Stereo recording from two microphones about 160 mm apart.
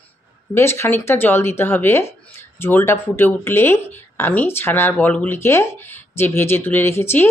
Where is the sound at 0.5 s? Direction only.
15° left (ahead or behind).